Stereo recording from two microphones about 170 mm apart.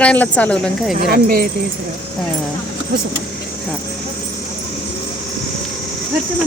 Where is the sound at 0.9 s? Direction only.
60° right (ahead or behind).